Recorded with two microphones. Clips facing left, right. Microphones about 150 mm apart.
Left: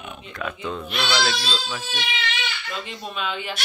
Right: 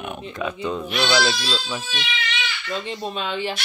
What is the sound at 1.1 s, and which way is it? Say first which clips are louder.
Speech: right 1 dB; 25° right (ahead or behind).